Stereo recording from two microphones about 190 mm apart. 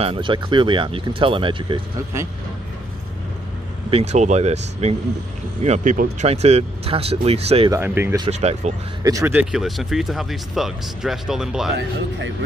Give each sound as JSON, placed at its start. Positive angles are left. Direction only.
{"t": 0.0, "sound": "speech", "side_deg": -30}
{"t": 3.9, "sound": "speech", "side_deg": -35}
{"t": 7.7, "sound": "speech", "side_deg": -10}
{"t": 8.3, "sound": "speech", "side_deg": -35}
{"t": 9.0, "sound": "speech", "side_deg": -15}